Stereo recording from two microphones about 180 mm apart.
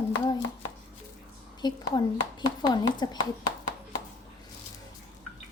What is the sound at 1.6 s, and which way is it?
Speech, 25° left (ahead or behind).